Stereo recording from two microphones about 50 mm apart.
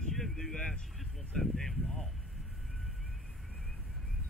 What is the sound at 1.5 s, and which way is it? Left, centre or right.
Speech, centre.